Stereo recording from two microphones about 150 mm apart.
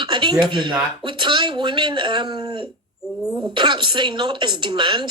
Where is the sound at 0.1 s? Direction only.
30° right (ahead or behind).